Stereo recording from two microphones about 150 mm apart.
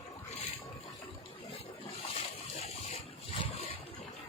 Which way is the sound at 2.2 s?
40° left (ahead or behind).